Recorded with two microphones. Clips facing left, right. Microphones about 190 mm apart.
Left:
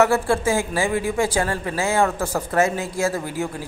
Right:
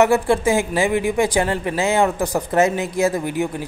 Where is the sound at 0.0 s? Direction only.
20° right (ahead or behind).